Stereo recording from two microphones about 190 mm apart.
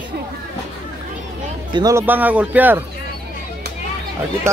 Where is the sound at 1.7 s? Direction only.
20° right (ahead or behind).